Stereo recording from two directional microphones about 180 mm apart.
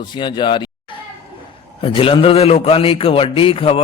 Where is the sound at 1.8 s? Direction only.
30° left (ahead or behind).